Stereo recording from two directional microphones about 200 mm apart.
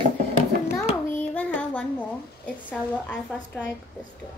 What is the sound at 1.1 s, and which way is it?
A woman's voice, 10° left (ahead or behind).